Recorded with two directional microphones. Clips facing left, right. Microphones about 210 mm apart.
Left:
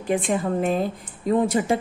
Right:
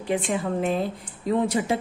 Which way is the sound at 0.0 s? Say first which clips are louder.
Left 2 dB; 50° left (ahead or behind).